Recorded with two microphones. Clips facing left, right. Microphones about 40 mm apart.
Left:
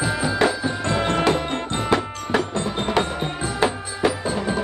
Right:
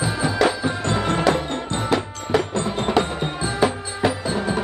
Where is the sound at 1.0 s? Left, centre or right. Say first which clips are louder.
Even; left.